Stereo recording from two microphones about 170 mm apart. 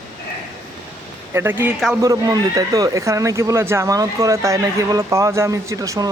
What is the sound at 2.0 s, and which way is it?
Speech, 20° right (ahead or behind).